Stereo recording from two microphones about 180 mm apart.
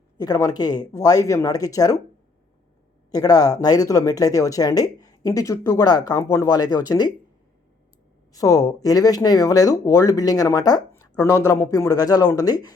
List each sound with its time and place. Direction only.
0.2 s speech: 20° left (ahead or behind)
3.1 s speech: 20° left (ahead or behind)
8.3 s speech: 20° left (ahead or behind)